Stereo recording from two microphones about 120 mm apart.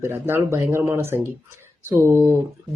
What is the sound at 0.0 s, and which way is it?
Speech, 20° right (ahead or behind).